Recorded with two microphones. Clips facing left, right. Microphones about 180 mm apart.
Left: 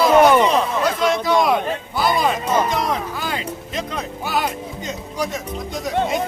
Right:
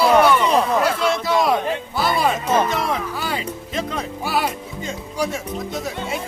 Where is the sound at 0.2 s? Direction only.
45° left (ahead or behind).